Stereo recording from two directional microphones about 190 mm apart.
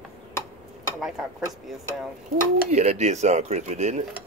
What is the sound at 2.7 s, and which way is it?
Speech, 35° right (ahead or behind).